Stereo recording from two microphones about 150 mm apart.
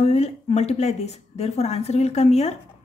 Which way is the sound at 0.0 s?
50° left (ahead or behind).